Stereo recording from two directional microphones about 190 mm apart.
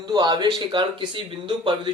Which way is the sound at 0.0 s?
25° right (ahead or behind).